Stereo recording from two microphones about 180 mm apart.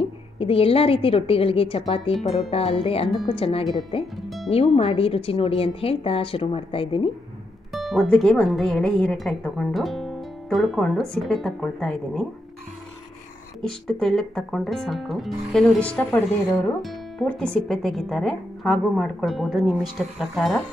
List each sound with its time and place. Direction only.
0.0 s a woman's voice: 30° left (ahead or behind)
4.0 s speech: centre (ahead or behind)
4.5 s a woman's voice: 35° left (ahead or behind)
7.7 s a woman's voice: centre (ahead or behind)
13.6 s a woman's voice: 5° left (ahead or behind)